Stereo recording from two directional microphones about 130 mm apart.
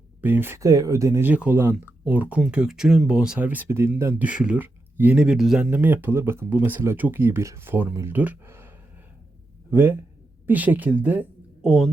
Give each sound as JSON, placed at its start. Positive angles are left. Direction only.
{"t": 0.2, "sound": "speech", "side_deg": -15}
{"t": 1.3, "sound": "speech", "side_deg": -10}
{"t": 5.7, "sound": "speech", "side_deg": -15}
{"t": 9.7, "sound": "a woman's voice", "side_deg": -15}